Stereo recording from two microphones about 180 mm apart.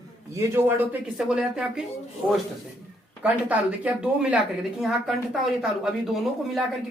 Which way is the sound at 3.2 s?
5° right (ahead or behind).